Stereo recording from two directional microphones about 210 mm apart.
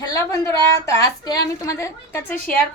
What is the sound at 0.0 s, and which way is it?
A woman's voice, 15° left (ahead or behind).